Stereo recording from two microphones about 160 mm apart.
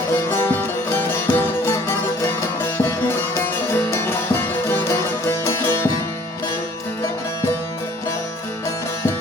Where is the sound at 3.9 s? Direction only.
15° left (ahead or behind).